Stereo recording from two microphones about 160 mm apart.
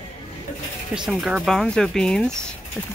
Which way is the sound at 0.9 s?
5° right (ahead or behind).